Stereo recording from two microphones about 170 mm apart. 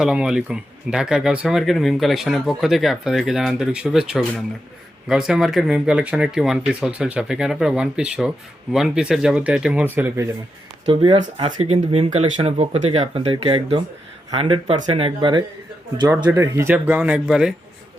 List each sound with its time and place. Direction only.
0.0 s speech: 5° right (ahead or behind)
10.8 s speech: 35° right (ahead or behind)
16.0 s speech: 10° right (ahead or behind)